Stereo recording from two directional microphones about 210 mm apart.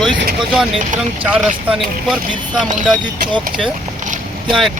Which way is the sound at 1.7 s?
Centre (ahead or behind).